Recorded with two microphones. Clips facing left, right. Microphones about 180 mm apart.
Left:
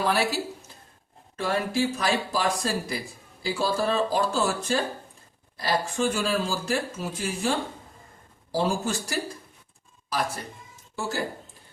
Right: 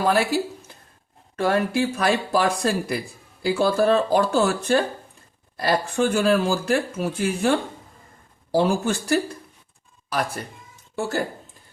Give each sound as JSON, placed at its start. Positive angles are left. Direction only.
{"t": 0.0, "sound": "speech", "side_deg": -50}
{"t": 1.4, "sound": "speech", "side_deg": -60}
{"t": 8.5, "sound": "speech", "side_deg": -60}